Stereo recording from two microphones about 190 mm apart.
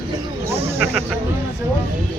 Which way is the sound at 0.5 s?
30° right (ahead or behind).